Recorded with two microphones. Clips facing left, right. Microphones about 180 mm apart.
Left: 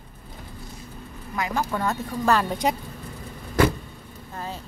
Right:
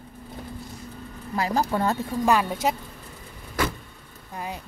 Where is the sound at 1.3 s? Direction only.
35° right (ahead or behind).